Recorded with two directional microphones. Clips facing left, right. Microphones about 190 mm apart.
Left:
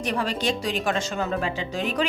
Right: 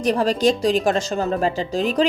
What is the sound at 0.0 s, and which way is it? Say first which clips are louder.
Speech: right 8 dB; 40° right (ahead or behind).